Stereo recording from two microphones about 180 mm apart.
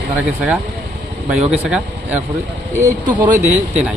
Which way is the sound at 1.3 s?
5° right (ahead or behind).